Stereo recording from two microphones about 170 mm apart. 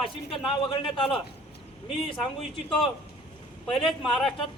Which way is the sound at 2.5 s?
Centre (ahead or behind).